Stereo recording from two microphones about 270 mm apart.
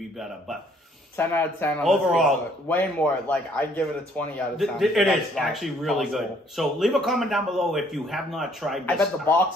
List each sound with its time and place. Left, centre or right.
1.1 s a man's voice: centre